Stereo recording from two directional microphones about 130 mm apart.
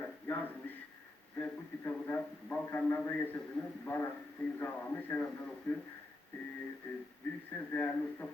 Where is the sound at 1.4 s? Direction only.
10° left (ahead or behind).